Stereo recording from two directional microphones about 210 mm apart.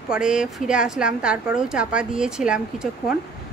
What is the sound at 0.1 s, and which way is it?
A woman's voice, 5° right (ahead or behind).